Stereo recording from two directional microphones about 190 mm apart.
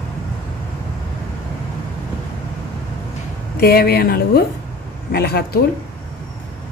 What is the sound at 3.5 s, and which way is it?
Speech, 55° left (ahead or behind).